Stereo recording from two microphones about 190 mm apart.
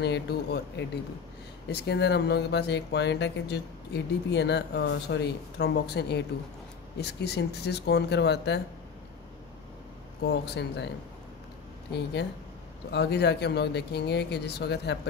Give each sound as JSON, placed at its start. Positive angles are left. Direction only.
{"t": 0.0, "sound": "speech", "side_deg": 60}
{"t": 10.2, "sound": "speech", "side_deg": 65}
{"t": 11.9, "sound": "speech", "side_deg": 60}